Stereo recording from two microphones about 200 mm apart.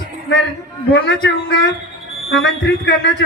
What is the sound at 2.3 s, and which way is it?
Speech, 70° left (ahead or behind).